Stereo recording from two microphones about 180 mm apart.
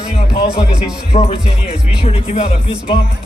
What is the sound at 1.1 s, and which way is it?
Speech, 35° left (ahead or behind).